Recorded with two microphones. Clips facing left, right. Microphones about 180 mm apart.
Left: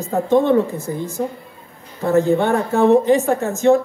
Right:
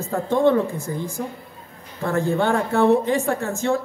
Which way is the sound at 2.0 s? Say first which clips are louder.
Left 5 dB; 20° left (ahead or behind).